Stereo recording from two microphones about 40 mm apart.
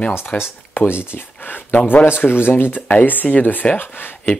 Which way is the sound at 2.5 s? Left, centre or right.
Left.